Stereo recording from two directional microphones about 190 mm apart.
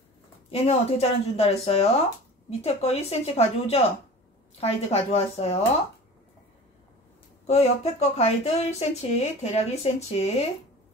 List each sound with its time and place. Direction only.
0.5 s speech: 35° left (ahead or behind)
7.4 s speech: 35° left (ahead or behind)